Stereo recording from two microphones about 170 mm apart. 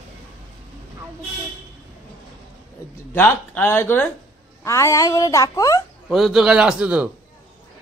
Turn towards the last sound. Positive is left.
turn(degrees=-5)  # may be behind; listen again after turning